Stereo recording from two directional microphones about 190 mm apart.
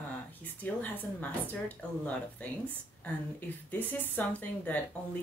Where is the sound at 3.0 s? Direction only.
10° left (ahead or behind).